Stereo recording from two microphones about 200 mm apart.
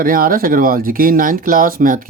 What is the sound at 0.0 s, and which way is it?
Speech, 45° right (ahead or behind).